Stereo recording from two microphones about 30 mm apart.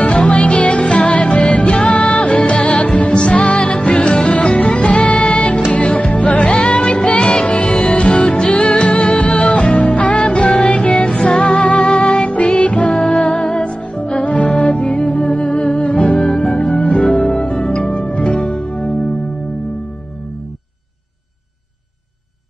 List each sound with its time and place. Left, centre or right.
0.2 s music: left
2.3 s music: left
6.4 s music: left
15.2 s music: left
15.8 s music: left
16.2 s music: left